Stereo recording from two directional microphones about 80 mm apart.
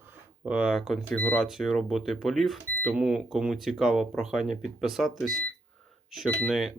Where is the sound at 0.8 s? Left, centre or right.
Centre.